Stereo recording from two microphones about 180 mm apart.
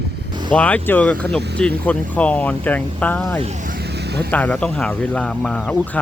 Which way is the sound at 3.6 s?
60° right (ahead or behind).